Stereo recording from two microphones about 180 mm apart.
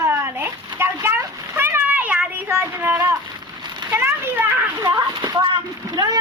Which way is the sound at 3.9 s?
10° right (ahead or behind).